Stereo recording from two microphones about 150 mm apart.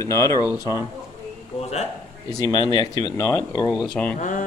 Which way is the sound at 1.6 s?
45° left (ahead or behind).